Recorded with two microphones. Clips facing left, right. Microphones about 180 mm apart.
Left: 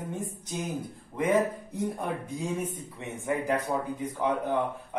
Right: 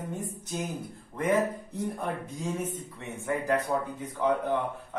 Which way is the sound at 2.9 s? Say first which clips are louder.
Left 2 dB; 15° left (ahead or behind).